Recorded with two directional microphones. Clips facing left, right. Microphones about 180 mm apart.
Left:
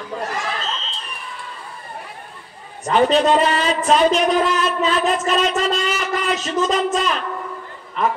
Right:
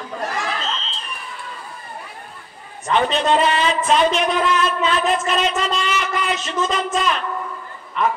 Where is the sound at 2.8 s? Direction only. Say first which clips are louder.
Left 3 dB; 40° left (ahead or behind).